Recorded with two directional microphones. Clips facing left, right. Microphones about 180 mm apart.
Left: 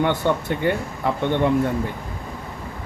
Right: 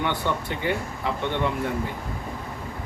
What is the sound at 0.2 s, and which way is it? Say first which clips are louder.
Speech: left 5 dB; 50° left (ahead or behind).